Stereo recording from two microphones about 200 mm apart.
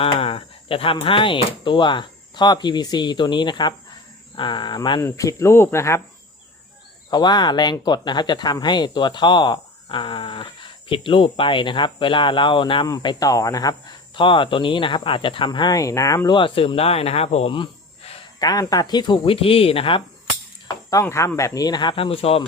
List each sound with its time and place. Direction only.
0.0 s speech: 30° left (ahead or behind)
7.1 s speech: 20° left (ahead or behind)
20.9 s speech: 15° left (ahead or behind)